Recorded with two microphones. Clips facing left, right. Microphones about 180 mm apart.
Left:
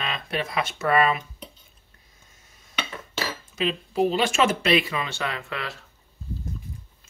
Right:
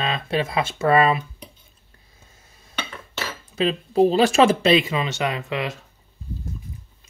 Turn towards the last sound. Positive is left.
turn(degrees=-20)  # may be behind; listen again after turning